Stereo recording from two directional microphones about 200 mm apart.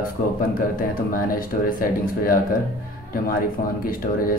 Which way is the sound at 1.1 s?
45° left (ahead or behind).